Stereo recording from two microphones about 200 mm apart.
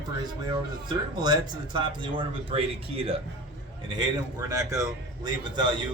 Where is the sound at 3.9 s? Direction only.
20° right (ahead or behind).